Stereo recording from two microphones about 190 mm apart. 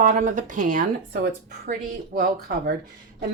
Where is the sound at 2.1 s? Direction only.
60° right (ahead or behind).